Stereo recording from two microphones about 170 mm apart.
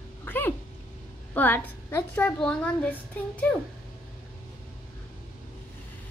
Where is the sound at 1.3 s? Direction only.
10° left (ahead or behind).